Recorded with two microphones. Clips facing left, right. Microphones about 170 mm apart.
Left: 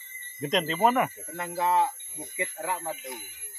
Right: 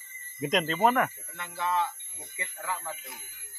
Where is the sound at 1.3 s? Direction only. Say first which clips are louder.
Left 5 dB; 40° left (ahead or behind).